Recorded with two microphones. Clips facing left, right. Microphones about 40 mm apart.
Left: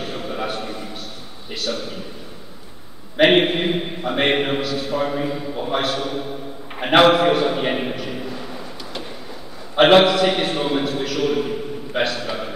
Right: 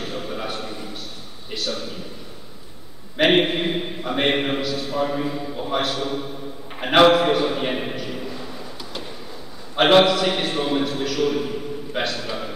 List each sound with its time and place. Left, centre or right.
0.0 s a sound: centre
3.2 s a man's voice: centre
9.8 s a man's voice: centre